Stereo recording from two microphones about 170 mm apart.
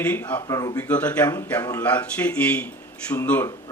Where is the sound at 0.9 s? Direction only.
10° left (ahead or behind).